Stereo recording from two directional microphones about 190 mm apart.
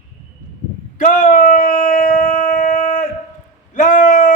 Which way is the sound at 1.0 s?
40° left (ahead or behind).